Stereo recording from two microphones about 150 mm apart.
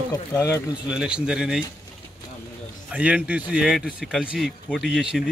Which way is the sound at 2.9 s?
10° right (ahead or behind).